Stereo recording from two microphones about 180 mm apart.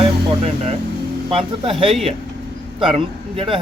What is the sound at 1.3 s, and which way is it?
Speech, 30° right (ahead or behind).